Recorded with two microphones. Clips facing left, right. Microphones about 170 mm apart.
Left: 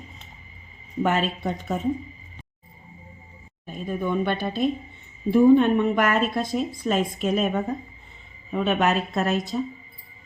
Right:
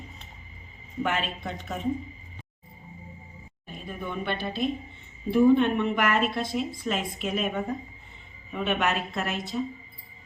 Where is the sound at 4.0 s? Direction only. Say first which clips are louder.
Left 6 dB; 45° left (ahead or behind).